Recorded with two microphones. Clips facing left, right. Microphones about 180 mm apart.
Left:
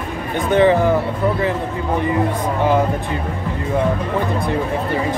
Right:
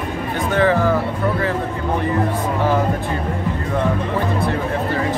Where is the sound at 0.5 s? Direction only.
20° left (ahead or behind).